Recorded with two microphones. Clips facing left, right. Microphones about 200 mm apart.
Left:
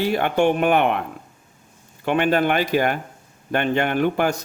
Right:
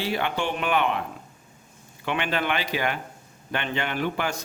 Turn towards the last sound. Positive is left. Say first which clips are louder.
# left 7 dB
turn(degrees=50)  # may be behind; listen again after turning